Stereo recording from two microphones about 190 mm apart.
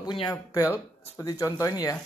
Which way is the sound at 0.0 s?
20° left (ahead or behind).